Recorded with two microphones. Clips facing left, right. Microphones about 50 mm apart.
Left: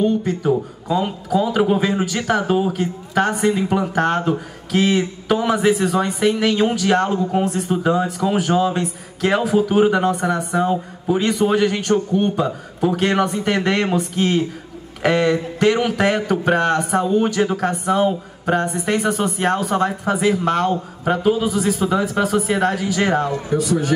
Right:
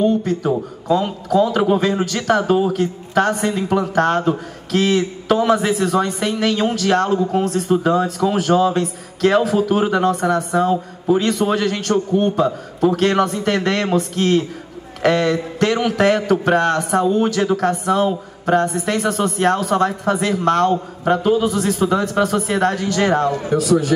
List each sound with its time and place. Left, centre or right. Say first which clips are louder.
0.0 s a man's voice: right 1 dB; centre